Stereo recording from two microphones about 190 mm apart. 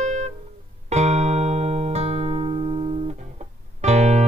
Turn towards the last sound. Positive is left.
turn(degrees=-35)  # may be behind; listen again after turning